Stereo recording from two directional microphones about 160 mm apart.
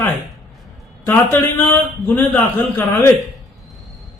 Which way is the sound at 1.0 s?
10° left (ahead or behind).